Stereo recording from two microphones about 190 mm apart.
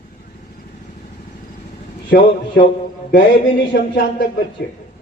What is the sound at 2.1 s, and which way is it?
A man's voice, 65° left (ahead or behind).